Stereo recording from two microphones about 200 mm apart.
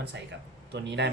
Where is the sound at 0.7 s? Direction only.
60° right (ahead or behind).